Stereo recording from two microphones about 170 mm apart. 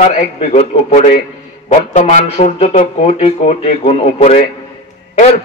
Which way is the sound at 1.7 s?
45° left (ahead or behind).